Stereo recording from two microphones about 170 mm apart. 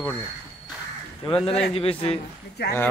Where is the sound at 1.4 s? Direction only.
35° left (ahead or behind).